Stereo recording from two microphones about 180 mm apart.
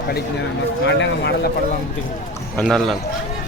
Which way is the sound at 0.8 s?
75° left (ahead or behind).